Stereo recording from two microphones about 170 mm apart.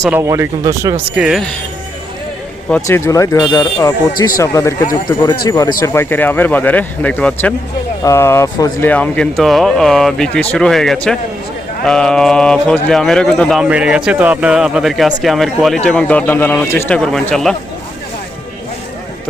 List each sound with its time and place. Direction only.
0.1 s speech: 15° right (ahead or behind)
1.1 s speech: 5° right (ahead or behind)
2.8 s speech: 15° left (ahead or behind)
8.9 s speech: 10° left (ahead or behind)